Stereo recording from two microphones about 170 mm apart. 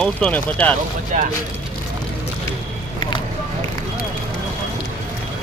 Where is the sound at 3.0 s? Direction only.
25° left (ahead or behind).